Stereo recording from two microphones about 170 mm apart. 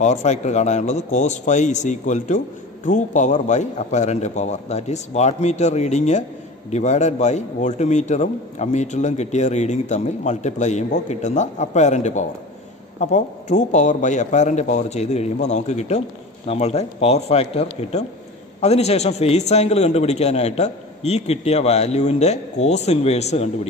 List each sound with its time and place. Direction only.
0.0 s a man's voice: 45° left (ahead or behind)